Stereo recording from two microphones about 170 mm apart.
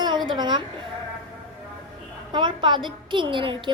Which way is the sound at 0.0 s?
25° right (ahead or behind).